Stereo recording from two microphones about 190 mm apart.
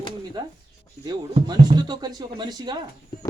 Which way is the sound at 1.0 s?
20° right (ahead or behind).